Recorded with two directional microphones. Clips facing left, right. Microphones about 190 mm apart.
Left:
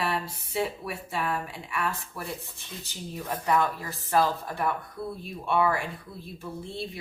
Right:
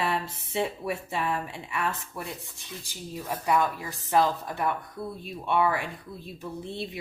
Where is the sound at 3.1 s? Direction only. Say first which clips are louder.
Even; 10° right (ahead or behind).